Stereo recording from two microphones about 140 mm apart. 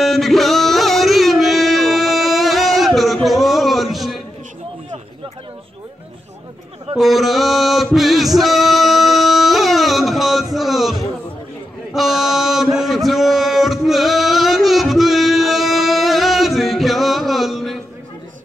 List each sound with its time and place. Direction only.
0.0 s music: centre (ahead or behind)
7.0 s male singing: centre (ahead or behind)
11.9 s mantra: centre (ahead or behind)